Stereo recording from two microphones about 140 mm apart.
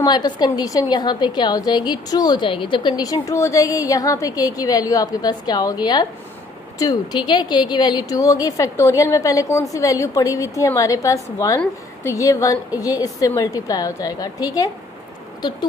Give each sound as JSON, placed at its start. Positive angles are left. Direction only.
{"t": 0.0, "sound": "a woman's voice", "side_deg": 30}